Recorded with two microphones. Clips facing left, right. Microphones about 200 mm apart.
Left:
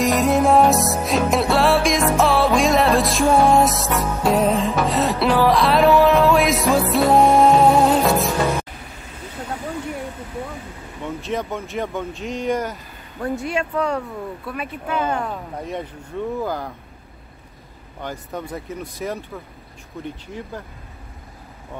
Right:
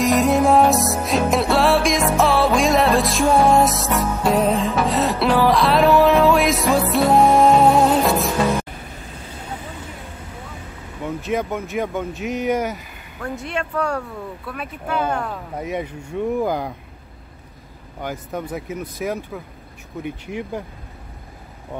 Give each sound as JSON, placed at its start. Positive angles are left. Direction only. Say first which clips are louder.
{"t": 0.0, "sound": "music", "louder": "right 1 dB", "side_deg": 0}
{"t": 11.2, "sound": "speech", "louder": "right 3 dB", "side_deg": -5}
{"t": 13.4, "sound": "speech", "louder": "right 1 dB", "side_deg": 5}
{"t": 15.6, "sound": "speech", "louder": "right 3 dB", "side_deg": -10}
{"t": 18.0, "sound": "speech", "louder": "right 2 dB", "side_deg": -5}